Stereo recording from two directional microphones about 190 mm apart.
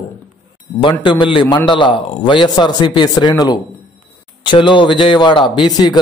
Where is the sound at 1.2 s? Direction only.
25° left (ahead or behind).